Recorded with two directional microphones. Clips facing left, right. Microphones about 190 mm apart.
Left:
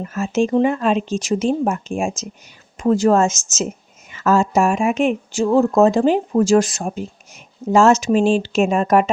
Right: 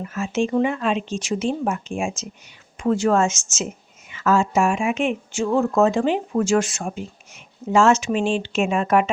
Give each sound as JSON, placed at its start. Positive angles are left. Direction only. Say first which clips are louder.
{"t": 0.0, "sound": "speech", "louder": "left 4 dB", "side_deg": 40}